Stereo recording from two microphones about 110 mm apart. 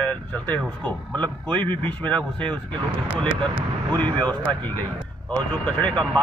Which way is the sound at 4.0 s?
15° left (ahead or behind).